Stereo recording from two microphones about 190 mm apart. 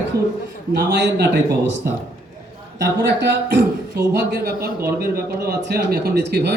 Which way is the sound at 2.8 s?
65° right (ahead or behind).